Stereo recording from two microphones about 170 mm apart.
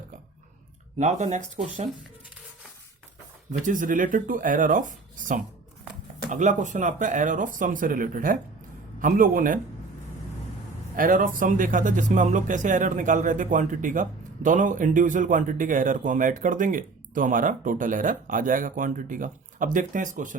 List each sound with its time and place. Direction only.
0.9 s speech: 45° right (ahead or behind)
3.6 s speech: 50° right (ahead or behind)
10.9 s speech: 55° right (ahead or behind)